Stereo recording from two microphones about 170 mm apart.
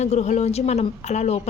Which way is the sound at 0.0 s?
40° left (ahead or behind).